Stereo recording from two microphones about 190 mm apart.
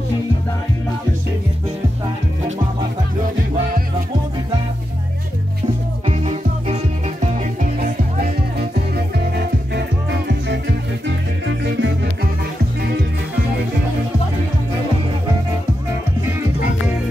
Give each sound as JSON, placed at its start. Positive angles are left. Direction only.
{"t": 6.0, "sound": "music", "side_deg": -35}
{"t": 9.8, "sound": "music", "side_deg": -65}